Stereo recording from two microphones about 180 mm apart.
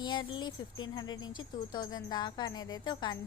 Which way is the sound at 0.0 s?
25° left (ahead or behind).